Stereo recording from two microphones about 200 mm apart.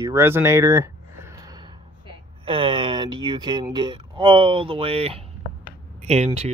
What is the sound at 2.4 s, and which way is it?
Speech, 25° right (ahead or behind).